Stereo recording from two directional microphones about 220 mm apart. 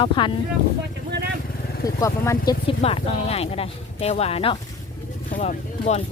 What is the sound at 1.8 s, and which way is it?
Speech, 15° left (ahead or behind).